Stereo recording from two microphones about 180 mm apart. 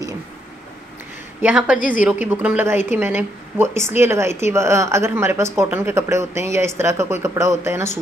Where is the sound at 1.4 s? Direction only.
10° right (ahead or behind).